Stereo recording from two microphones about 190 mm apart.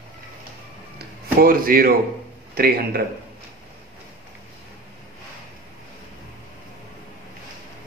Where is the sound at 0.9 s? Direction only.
50° right (ahead or behind).